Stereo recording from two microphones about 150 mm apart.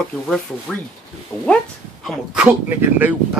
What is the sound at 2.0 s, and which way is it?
Speech, 10° right (ahead or behind).